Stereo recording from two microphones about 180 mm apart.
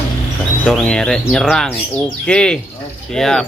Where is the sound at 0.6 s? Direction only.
5° left (ahead or behind).